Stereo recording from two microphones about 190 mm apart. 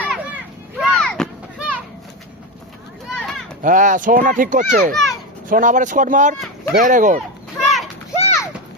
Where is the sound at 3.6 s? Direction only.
40° right (ahead or behind).